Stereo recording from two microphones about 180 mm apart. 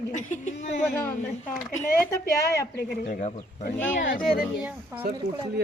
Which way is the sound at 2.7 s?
50° left (ahead or behind).